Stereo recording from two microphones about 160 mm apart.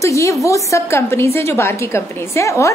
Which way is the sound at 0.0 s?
20° left (ahead or behind).